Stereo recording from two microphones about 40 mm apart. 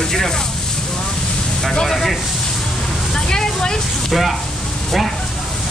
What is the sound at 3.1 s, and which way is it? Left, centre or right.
Speech, centre.